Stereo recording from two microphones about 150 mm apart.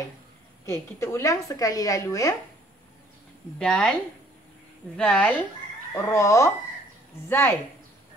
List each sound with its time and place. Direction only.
0.7 s speech: 20° left (ahead or behind)
3.5 s a woman's voice: 5° left (ahead or behind)
4.9 s a woman's voice: 5° left (ahead or behind)
5.9 s a woman's voice: 20° left (ahead or behind)